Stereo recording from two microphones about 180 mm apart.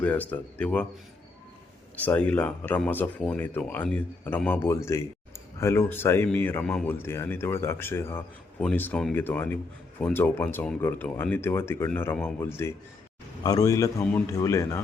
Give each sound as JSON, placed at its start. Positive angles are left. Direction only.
{"t": 0.0, "sound": "speech", "side_deg": 10}
{"t": 2.0, "sound": "speech", "side_deg": 10}